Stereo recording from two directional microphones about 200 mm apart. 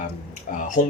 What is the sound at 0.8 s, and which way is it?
Speech, 40° left (ahead or behind).